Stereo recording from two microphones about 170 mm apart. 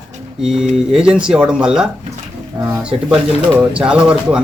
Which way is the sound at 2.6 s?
15° right (ahead or behind).